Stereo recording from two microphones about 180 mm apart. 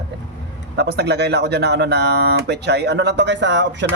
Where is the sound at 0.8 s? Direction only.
65° right (ahead or behind).